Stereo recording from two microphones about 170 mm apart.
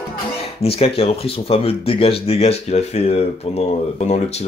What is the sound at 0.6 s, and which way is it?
Speech, 35° left (ahead or behind).